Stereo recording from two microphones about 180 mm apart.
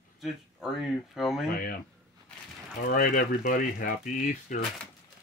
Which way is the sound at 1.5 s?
55° left (ahead or behind).